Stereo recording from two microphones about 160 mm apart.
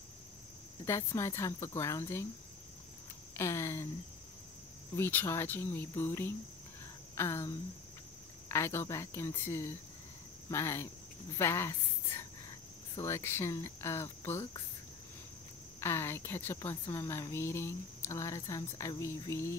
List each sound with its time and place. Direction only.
0.8 s a woman's voice: 15° left (ahead or behind)
3.3 s a woman's voice: 15° left (ahead or behind)
4.9 s a woman's voice: 15° left (ahead or behind)
15.8 s a woman's voice: 15° left (ahead or behind)